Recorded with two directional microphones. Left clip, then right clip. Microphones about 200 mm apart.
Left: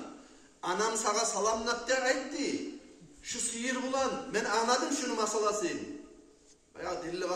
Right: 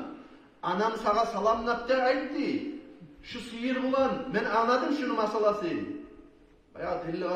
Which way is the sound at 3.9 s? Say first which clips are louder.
Right 5 dB; 25° left (ahead or behind).